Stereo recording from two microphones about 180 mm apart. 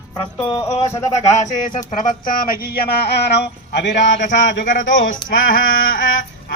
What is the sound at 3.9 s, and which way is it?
Speech, 45° left (ahead or behind).